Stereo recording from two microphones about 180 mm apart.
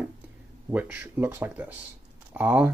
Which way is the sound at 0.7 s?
10° right (ahead or behind).